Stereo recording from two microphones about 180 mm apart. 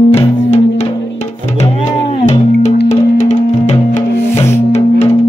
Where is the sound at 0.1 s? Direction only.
35° left (ahead or behind).